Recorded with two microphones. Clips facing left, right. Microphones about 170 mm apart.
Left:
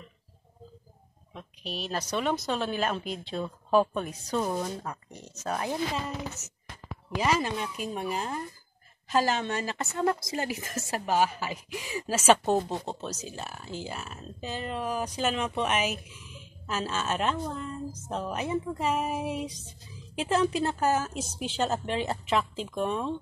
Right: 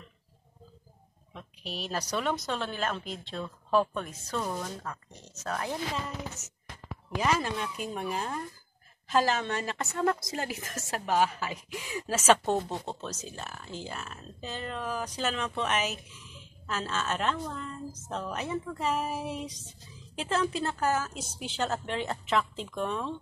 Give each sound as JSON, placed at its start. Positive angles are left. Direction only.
{"t": 1.6, "sound": "speech", "side_deg": -10}
{"t": 2.0, "sound": "a woman's voice", "side_deg": 5}
{"t": 2.6, "sound": "a woman's voice", "side_deg": 15}
{"t": 7.2, "sound": "a woman's voice", "side_deg": 10}